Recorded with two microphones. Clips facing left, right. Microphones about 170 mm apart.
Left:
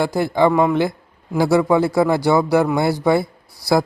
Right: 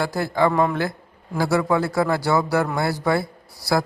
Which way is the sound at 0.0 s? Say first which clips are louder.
Left 4 dB; 20° left (ahead or behind).